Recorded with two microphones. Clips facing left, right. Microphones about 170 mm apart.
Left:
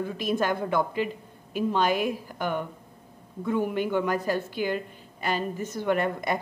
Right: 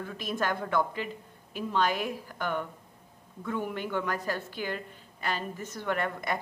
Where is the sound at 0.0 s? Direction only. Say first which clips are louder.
Left 5 dB; 15° left (ahead or behind).